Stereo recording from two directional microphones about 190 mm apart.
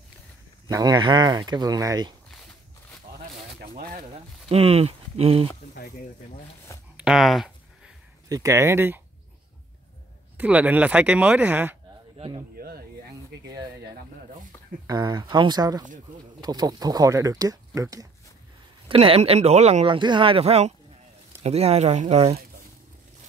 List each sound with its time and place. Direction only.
0.7 s speech: 20° right (ahead or behind)
2.3 s walk: 5° left (ahead or behind)
3.5 s a sound: 50° right (ahead or behind)
4.5 s speech: 30° right (ahead or behind)
7.0 s a sound: centre (ahead or behind)
8.3 s speech: 15° right (ahead or behind)
10.3 s speech: 5° right (ahead or behind)
12.5 s a sound: 55° right (ahead or behind)
14.9 s speech: 20° right (ahead or behind)
18.9 s speech: 30° right (ahead or behind)